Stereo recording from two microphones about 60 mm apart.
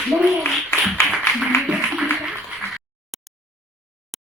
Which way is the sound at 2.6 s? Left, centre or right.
Centre.